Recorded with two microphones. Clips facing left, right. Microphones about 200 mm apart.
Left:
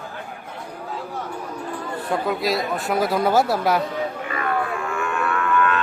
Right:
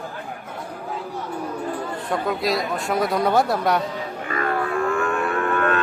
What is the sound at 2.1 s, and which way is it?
Speech, centre (ahead or behind).